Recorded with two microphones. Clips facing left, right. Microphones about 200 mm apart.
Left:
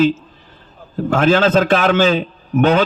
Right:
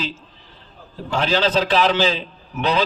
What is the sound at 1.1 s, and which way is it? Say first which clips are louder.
A man's voice: left 6 dB; 50° left (ahead or behind).